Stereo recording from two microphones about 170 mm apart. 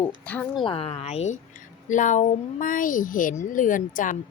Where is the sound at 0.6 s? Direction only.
35° left (ahead or behind).